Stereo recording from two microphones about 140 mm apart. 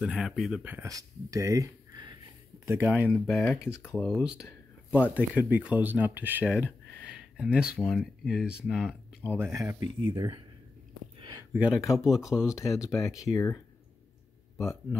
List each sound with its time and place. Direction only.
0.0 s speech: 5° right (ahead or behind)
0.8 s speech: 25° right (ahead or behind)
2.6 s speech: 15° right (ahead or behind)
3.3 s speech: centre (ahead or behind)
9.3 s speech: 15° right (ahead or behind)
10.1 s speech: 35° right (ahead or behind)
11.1 s a sound: 30° right (ahead or behind)
11.5 s speech: 5° right (ahead or behind)
12.5 s speech: 25° left (ahead or behind)
12.8 s speech: centre (ahead or behind)
13.2 s speech: 25° left (ahead or behind)